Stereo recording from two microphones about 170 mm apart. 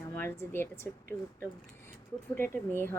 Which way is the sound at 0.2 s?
15° left (ahead or behind).